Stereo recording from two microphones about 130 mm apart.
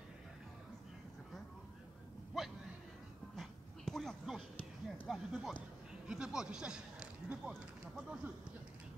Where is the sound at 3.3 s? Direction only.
Centre (ahead or behind).